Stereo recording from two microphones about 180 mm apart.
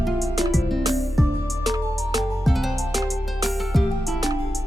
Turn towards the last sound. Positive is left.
turn(degrees=0)  # may be behind; listen again after turning